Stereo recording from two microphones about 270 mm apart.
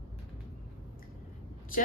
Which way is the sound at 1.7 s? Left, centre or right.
Left.